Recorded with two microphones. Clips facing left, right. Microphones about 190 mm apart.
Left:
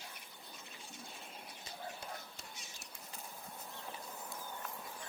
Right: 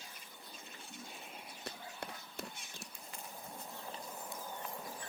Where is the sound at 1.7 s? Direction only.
65° right (ahead or behind).